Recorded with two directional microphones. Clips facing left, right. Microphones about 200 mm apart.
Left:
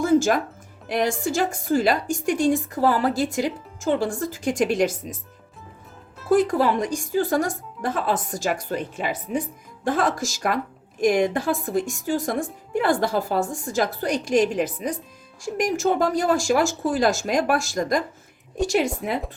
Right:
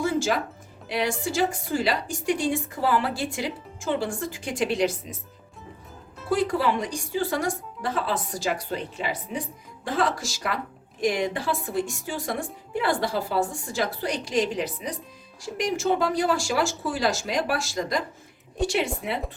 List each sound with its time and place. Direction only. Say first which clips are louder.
0.0 s music: left 6 dB; 45° left (ahead or behind)
0.9 s a woman's voice: left 4 dB; 45° left (ahead or behind)
6.3 s a woman's voice: left 5 dB; 45° left (ahead or behind)